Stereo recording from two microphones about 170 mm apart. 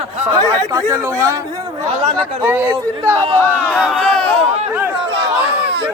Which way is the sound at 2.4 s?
15° right (ahead or behind).